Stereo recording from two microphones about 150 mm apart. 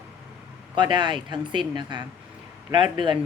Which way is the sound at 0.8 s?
30° right (ahead or behind).